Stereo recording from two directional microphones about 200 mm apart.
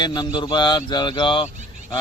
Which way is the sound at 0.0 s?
20° left (ahead or behind).